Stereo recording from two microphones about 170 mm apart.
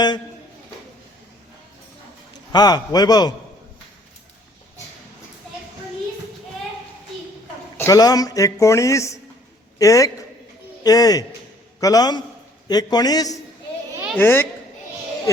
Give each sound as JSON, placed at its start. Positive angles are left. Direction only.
{"t": 2.5, "sound": "a man's voice", "side_deg": 25}
{"t": 7.8, "sound": "a man's voice", "side_deg": 20}
{"t": 13.9, "sound": "a sound", "side_deg": -10}
{"t": 14.2, "sound": "a child's voice", "side_deg": 15}